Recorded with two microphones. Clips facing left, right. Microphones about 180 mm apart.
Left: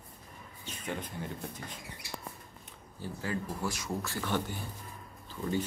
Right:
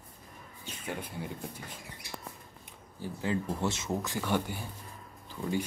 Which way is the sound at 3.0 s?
20° right (ahead or behind).